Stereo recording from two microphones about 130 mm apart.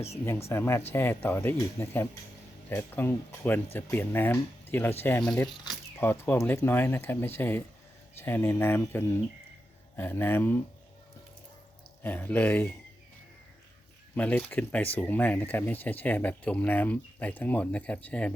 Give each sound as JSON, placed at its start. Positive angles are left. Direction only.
{"t": 0.3, "sound": "speech", "side_deg": 20}
{"t": 6.0, "sound": "speech", "side_deg": 20}
{"t": 12.0, "sound": "speech", "side_deg": 15}
{"t": 14.2, "sound": "speech", "side_deg": 15}